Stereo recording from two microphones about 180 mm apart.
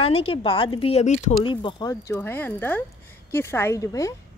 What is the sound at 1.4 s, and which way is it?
Speech, 25° left (ahead or behind).